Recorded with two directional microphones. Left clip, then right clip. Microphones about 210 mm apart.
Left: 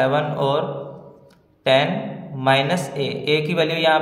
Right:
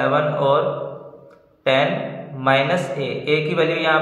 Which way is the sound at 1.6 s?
50° left (ahead or behind).